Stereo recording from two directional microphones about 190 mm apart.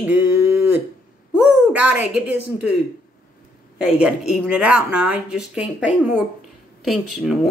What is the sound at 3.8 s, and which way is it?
Speech, 5° right (ahead or behind).